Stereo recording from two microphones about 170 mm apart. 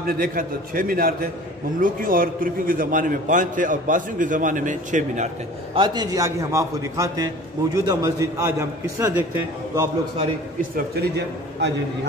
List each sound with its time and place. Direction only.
0.0 s a man's voice: 60° right (ahead or behind)
5.8 s a man's voice: 25° right (ahead or behind)
11.0 s a man's voice: 75° right (ahead or behind)